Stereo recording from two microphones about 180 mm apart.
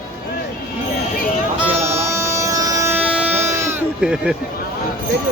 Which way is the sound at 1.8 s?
15° right (ahead or behind).